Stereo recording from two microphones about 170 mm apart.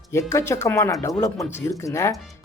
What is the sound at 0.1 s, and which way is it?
Speech, 15° left (ahead or behind).